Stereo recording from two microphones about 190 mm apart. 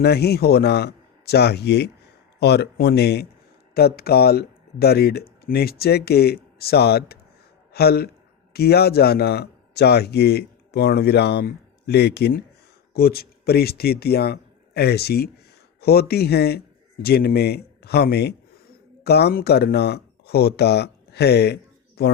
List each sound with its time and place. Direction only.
0.0 s speech: 55° left (ahead or behind)